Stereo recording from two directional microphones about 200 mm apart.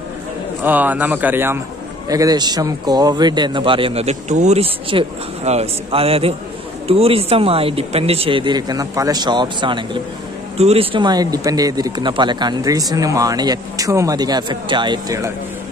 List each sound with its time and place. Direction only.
0.7 s speech: 10° right (ahead or behind)